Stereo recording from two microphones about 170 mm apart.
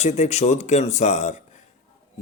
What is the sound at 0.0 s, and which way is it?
Speech, 40° left (ahead or behind).